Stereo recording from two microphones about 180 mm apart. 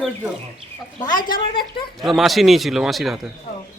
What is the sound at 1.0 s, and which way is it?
Speech, 25° left (ahead or behind).